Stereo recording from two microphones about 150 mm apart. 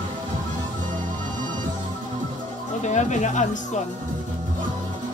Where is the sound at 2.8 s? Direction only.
50° left (ahead or behind).